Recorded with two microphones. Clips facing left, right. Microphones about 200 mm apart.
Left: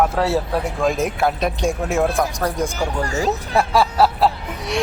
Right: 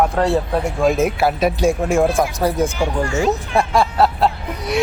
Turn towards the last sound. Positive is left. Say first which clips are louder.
# right 3 dB
turn(degrees=0)  # may be behind; listen again after turning